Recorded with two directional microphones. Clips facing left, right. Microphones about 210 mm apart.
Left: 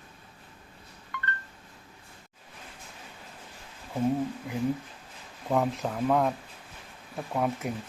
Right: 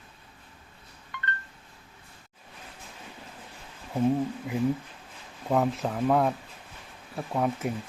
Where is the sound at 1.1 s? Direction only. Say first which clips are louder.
Left 2 dB; 20° right (ahead or behind).